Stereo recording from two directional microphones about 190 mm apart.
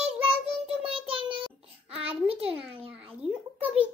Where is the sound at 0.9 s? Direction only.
30° right (ahead or behind).